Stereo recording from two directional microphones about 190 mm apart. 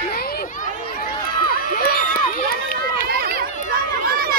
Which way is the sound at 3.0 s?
55° right (ahead or behind).